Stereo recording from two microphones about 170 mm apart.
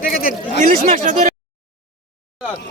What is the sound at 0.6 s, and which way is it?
Speech, 55° right (ahead or behind).